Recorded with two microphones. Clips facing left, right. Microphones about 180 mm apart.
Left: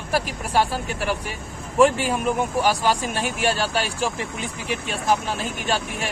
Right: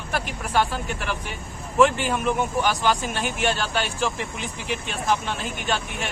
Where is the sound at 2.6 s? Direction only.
35° left (ahead or behind).